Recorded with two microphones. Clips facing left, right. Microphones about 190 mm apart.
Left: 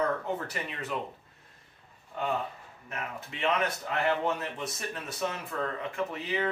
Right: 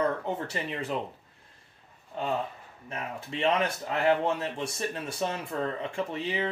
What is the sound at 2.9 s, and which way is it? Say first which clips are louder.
Speech: right 3 dB; 30° right (ahead or behind).